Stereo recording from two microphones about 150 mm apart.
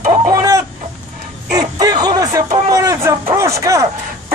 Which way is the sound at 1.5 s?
25° right (ahead or behind).